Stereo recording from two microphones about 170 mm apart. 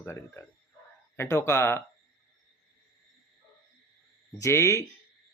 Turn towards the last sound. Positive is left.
turn(degrees=15)  # may be behind; listen again after turning